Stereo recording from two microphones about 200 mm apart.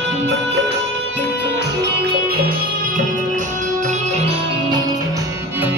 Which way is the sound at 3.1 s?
40° right (ahead or behind).